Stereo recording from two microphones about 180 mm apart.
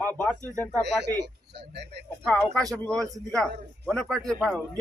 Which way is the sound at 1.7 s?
70° right (ahead or behind).